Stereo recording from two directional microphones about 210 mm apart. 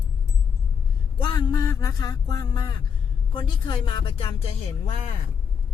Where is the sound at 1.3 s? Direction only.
15° left (ahead or behind).